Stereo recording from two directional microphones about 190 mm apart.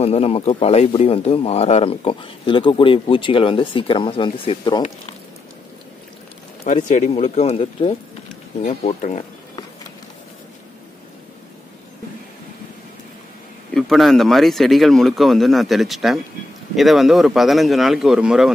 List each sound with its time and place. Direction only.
0.0 s speech: 30° left (ahead or behind)
6.6 s speech: 40° left (ahead or behind)
13.7 s speech: centre (ahead or behind)